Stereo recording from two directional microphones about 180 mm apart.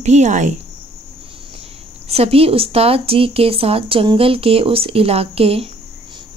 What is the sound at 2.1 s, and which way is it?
Speech, 35° right (ahead or behind).